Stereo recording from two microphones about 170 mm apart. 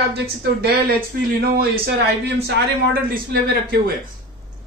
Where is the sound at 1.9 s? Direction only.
75° right (ahead or behind).